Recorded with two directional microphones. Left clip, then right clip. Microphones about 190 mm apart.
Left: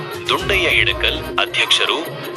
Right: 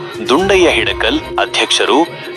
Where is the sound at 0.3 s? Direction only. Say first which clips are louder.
Right 6 dB; centre (ahead or behind).